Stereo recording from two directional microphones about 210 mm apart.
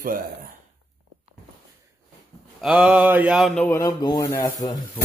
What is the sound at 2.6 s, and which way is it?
Speech, 5° right (ahead or behind).